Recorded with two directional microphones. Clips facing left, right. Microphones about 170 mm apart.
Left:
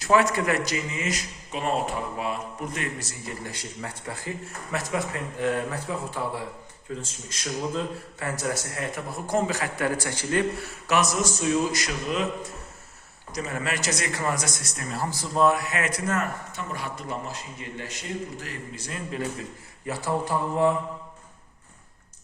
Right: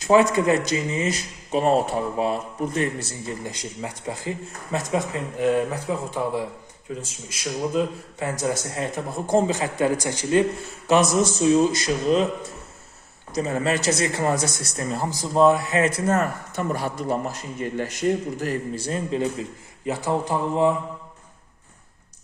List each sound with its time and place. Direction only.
0.0 s speech: 20° right (ahead or behind)
13.3 s speech: 30° right (ahead or behind)
15.0 s speech: 15° right (ahead or behind)
15.3 s speech: 25° right (ahead or behind)